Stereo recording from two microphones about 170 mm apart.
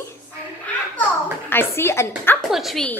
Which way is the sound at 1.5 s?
15° left (ahead or behind).